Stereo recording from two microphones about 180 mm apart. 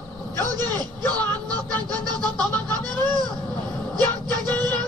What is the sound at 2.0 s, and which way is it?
Music, 20° right (ahead or behind).